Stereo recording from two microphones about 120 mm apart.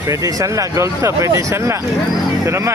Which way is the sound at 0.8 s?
25° right (ahead or behind).